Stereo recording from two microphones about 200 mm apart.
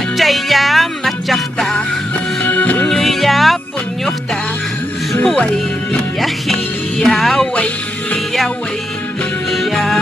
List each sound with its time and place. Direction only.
0.2 s music: centre (ahead or behind)
5.2 s speech: 5° left (ahead or behind)
6.2 s music: centre (ahead or behind)
9.5 s music: centre (ahead or behind)